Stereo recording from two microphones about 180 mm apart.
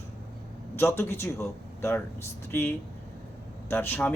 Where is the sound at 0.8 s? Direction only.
15° left (ahead or behind).